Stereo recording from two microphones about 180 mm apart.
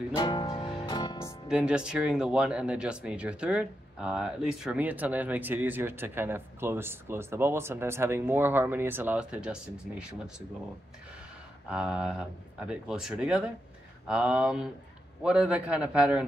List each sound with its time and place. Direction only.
0.1 s music: 25° left (ahead or behind)
1.5 s speech: 5° right (ahead or behind)
11.7 s speech: 5° right (ahead or behind)